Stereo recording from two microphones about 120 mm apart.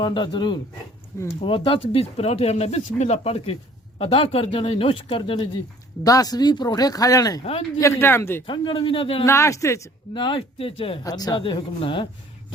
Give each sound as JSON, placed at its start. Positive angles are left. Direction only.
{"t": 0.0, "sound": "speech", "side_deg": 40}
{"t": 1.1, "sound": "speech", "side_deg": 25}
{"t": 1.5, "sound": "speech", "side_deg": 50}
{"t": 6.0, "sound": "speech", "side_deg": 30}
{"t": 8.4, "sound": "speech", "side_deg": 45}
{"t": 9.2, "sound": "speech", "side_deg": 25}
{"t": 10.2, "sound": "speech", "side_deg": 45}
{"t": 11.0, "sound": "speech", "side_deg": 30}
{"t": 11.4, "sound": "speech", "side_deg": 45}